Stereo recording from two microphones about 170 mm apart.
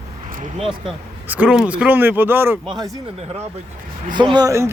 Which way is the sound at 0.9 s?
5° right (ahead or behind).